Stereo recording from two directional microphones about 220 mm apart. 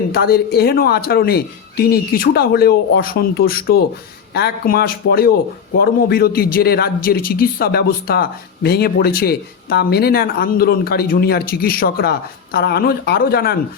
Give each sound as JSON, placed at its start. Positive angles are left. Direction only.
{"t": 0.1, "sound": "a man's voice", "side_deg": 45}